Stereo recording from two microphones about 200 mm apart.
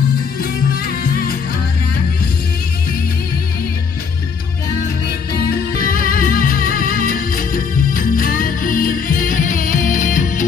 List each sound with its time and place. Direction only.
0.4 s music: 50° left (ahead or behind)
5.5 s music: 45° left (ahead or behind)